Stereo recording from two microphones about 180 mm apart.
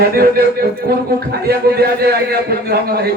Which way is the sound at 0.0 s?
60° right (ahead or behind).